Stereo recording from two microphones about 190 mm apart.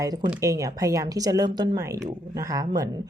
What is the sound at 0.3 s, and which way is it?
A woman's voice, 15° right (ahead or behind).